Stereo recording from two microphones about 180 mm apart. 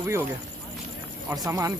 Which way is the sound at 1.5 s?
20° right (ahead or behind).